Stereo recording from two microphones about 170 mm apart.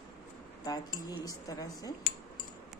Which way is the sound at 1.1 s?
20° left (ahead or behind).